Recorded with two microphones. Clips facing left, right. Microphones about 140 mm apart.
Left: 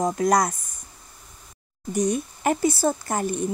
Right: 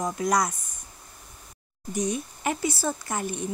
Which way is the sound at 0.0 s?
45° left (ahead or behind).